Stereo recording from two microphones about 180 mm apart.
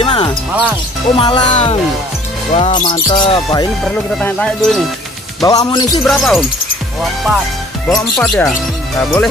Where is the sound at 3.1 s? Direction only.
30° left (ahead or behind).